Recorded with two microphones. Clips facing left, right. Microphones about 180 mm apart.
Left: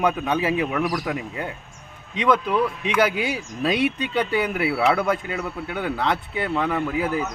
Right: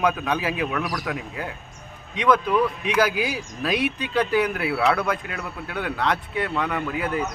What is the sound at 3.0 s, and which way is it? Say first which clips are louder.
Speech: left 1 dB; 25° left (ahead or behind).